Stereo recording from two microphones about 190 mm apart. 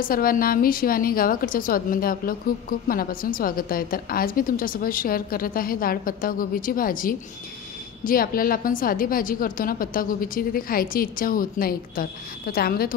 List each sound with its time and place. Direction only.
0.0 s a woman's voice: 50° left (ahead or behind)